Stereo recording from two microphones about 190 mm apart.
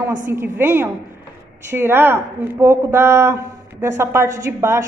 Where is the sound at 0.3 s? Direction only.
10° right (ahead or behind).